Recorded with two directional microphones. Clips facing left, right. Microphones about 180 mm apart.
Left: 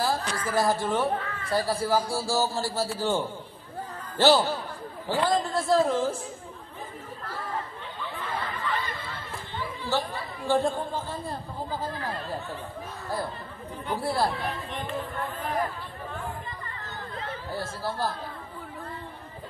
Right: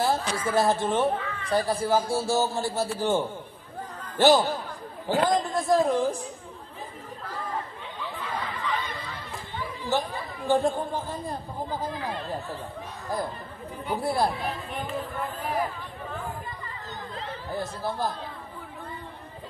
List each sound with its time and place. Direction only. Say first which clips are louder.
0.0 s a man's voice: right 2 dB; 25° right (ahead or behind)
8.1 s a sound: even; centre (ahead or behind)
9.8 s speech: right 2 dB; 20° right (ahead or behind)
11.9 s speech: right 1 dB; centre (ahead or behind)
13.8 s speech: right 1 dB; 15° right (ahead or behind)
17.5 s a man's voice: right 3 dB; 20° right (ahead or behind)